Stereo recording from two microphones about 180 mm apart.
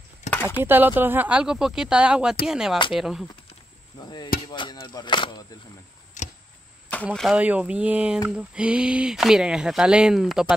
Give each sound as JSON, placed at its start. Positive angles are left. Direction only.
{"t": 0.3, "sound": "chop", "side_deg": 15}
{"t": 0.7, "sound": "speech", "side_deg": -10}
{"t": 4.0, "sound": "speech", "side_deg": 25}
{"t": 6.2, "sound": "a sound", "side_deg": 45}
{"t": 7.2, "sound": "speech", "side_deg": -5}